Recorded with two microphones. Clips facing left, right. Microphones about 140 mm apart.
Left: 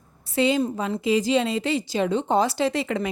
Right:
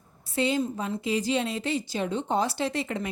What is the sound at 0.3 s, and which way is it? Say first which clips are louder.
A woman's voice: left 5 dB; 90° left.